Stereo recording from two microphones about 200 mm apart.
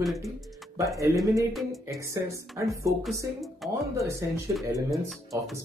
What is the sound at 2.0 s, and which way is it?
Speech, 15° right (ahead or behind).